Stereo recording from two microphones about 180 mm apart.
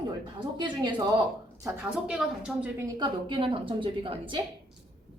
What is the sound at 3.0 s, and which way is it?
A woman's voice, 30° right (ahead or behind).